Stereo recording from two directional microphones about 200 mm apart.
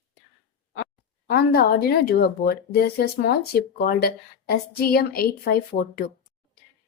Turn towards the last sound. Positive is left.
turn(degrees=45)  # may be behind; listen again after turning